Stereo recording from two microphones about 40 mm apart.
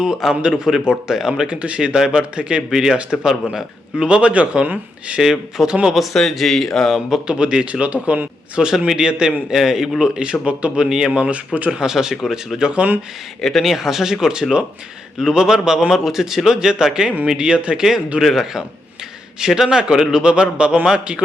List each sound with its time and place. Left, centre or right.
0.0 s speech: centre
1.6 s a man's voice: right
2.6 s a man's voice: centre; by 5.1 s right
5.1 s speech: centre
6.1 s speech: centre
7.3 s a man's voice: right
8.6 s speech: centre
10.0 s a man's voice: right
10.8 s speech: centre
11.1 s speech: right
11.7 s a man's voice: centre
13.4 s a man's voice: centre; by 17.8 s right
18.3 s a man's voice: centre